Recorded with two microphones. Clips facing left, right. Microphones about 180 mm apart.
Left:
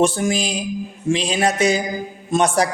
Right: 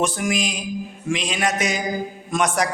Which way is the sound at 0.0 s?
30° left (ahead or behind).